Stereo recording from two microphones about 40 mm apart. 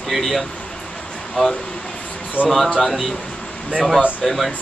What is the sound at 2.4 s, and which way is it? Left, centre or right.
Speech, right.